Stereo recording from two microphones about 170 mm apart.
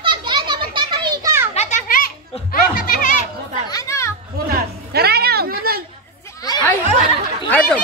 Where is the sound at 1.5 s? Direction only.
45° left (ahead or behind).